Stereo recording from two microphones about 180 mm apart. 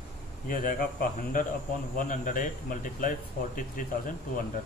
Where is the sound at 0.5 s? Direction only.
50° left (ahead or behind).